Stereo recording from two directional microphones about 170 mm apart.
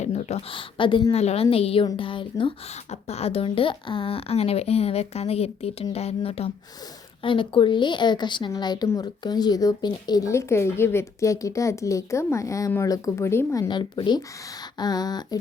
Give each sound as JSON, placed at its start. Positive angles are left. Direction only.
{"t": 0.0, "sound": "speech", "side_deg": 40}